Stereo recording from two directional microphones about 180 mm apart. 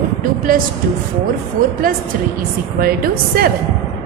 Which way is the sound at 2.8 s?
55° right (ahead or behind).